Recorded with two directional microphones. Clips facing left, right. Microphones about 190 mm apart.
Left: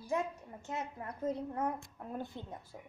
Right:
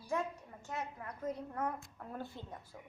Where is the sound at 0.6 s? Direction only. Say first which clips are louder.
Left 2 dB; 25° left (ahead or behind).